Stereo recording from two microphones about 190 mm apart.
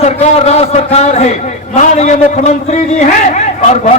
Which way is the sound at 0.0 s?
35° left (ahead or behind).